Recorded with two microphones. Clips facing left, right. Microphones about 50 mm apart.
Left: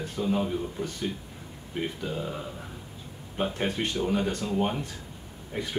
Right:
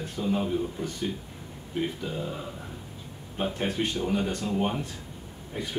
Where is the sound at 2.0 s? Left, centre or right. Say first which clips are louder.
Even; centre.